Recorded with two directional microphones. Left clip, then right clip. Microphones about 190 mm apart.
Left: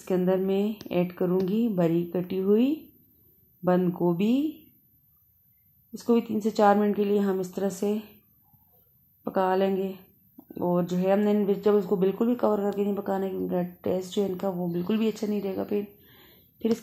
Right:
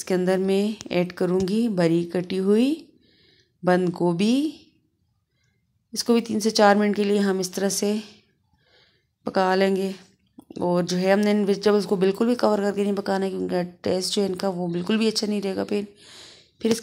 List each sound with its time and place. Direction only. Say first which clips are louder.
0.0 s speech: right 3 dB; 25° right (ahead or behind)
5.9 s speech: right 3 dB; 20° right (ahead or behind)
9.2 s a woman's voice: right 4 dB; 20° right (ahead or behind)